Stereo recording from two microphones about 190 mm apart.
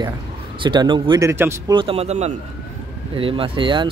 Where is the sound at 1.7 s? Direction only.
30° right (ahead or behind).